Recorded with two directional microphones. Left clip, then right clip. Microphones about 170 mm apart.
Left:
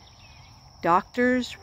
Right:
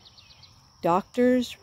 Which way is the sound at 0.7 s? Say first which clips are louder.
Left 1 dB; 40° right (ahead or behind).